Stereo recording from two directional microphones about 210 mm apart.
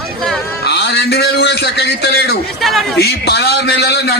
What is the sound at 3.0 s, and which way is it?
A man's voice, 50° left (ahead or behind).